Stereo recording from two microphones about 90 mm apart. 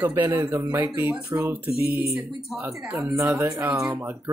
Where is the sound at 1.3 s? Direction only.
30° right (ahead or behind).